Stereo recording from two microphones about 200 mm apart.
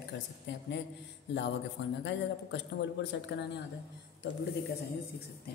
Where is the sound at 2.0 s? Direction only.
60° left (ahead or behind).